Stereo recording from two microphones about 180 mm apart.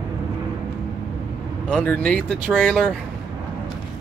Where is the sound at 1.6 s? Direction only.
5° left (ahead or behind).